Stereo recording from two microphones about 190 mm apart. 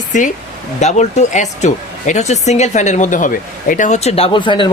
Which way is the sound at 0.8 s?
35° left (ahead or behind).